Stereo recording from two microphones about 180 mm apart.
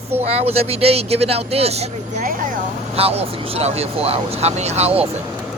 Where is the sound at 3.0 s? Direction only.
35° right (ahead or behind).